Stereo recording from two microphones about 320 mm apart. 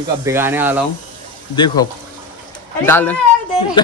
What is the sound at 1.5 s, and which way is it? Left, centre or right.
Speech, centre.